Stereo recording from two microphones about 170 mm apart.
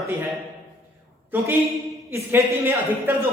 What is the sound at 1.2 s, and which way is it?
A woman's voice, 10° right (ahead or behind).